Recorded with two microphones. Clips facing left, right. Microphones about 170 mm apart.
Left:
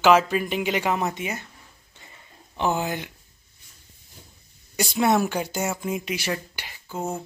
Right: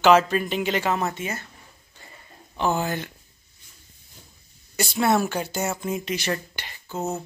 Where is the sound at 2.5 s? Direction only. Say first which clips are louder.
Right 1 dB; 15° left (ahead or behind).